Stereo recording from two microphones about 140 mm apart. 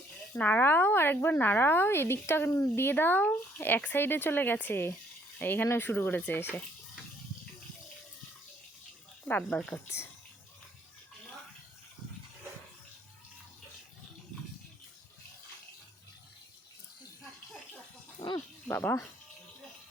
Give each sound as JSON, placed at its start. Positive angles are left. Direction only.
{"t": 0.3, "sound": "a woman's voice", "side_deg": 10}
{"t": 9.2, "sound": "a woman's voice", "side_deg": 10}
{"t": 18.3, "sound": "speech", "side_deg": 20}